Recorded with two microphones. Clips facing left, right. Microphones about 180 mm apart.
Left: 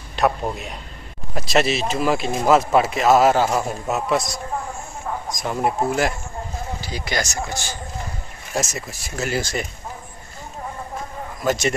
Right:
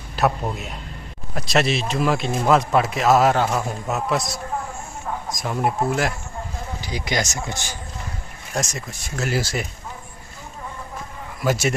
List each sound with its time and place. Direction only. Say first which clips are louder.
0.1 s a man's voice: left 1 dB; centre (ahead or behind)
6.8 s speech: right 2 dB; 15° right (ahead or behind)
8.5 s a man's voice: left 2 dB; 5° left (ahead or behind)
11.4 s speech: even; 5° right (ahead or behind)